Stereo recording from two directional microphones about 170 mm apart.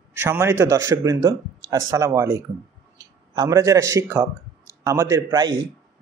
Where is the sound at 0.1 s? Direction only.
15° right (ahead or behind).